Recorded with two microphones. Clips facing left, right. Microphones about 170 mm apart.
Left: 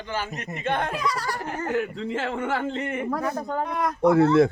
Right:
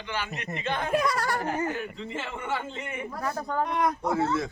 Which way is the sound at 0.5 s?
60° left (ahead or behind).